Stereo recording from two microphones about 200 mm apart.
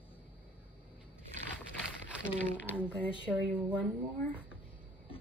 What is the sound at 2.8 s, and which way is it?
Speech, 5° right (ahead or behind).